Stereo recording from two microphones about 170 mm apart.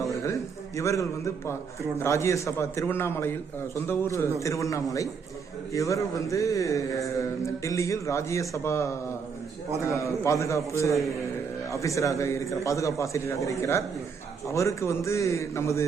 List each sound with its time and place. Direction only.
0.8 s a man's voice: 20° left (ahead or behind)